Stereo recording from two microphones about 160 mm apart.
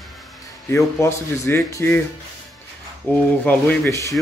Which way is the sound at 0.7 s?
15° left (ahead or behind).